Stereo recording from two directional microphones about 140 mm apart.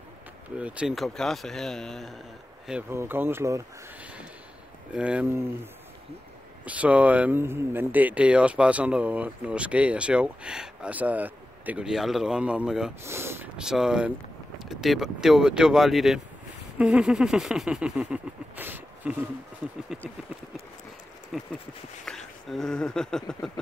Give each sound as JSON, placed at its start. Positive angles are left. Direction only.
{"t": 0.6, "sound": "speech", "side_deg": -10}
{"t": 2.9, "sound": "speech", "side_deg": -15}
{"t": 4.0, "sound": "a sound", "side_deg": -10}
{"t": 4.9, "sound": "speech", "side_deg": -5}
{"t": 6.6, "sound": "speech", "side_deg": -10}
{"t": 13.0, "sound": "speech", "side_deg": -20}
{"t": 13.6, "sound": "speech", "side_deg": -5}
{"t": 21.3, "sound": "speech", "side_deg": -5}